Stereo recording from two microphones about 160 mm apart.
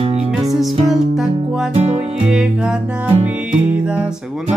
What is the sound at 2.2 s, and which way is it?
Music, 5° right (ahead or behind).